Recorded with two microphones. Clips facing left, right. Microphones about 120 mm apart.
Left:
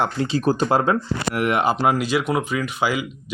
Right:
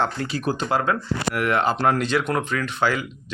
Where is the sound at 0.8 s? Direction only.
20° left (ahead or behind).